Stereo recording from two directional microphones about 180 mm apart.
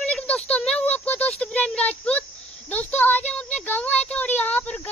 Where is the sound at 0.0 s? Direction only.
5° left (ahead or behind).